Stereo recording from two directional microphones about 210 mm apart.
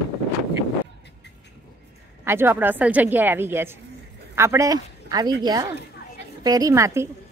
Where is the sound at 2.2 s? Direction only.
10° right (ahead or behind).